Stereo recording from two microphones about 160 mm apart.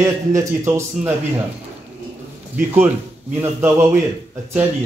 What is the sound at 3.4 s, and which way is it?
Speech, 15° right (ahead or behind).